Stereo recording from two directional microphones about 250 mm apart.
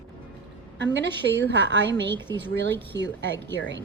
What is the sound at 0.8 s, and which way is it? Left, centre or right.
Speech, right.